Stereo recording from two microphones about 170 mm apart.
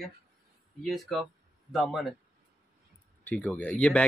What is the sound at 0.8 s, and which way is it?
Speech, centre (ahead or behind).